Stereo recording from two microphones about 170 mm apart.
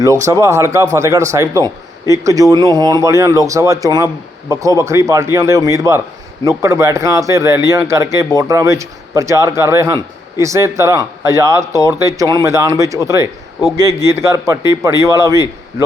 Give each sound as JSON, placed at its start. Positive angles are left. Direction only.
{"t": 0.0, "sound": "speech", "side_deg": -15}